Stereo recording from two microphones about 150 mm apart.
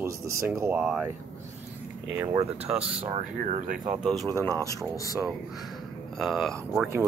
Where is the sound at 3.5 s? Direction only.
55° right (ahead or behind).